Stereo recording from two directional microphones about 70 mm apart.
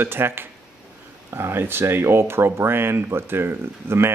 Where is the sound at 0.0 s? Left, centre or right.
Right.